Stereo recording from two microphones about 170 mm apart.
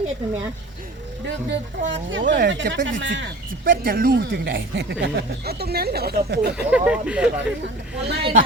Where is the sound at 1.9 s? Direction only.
90° right.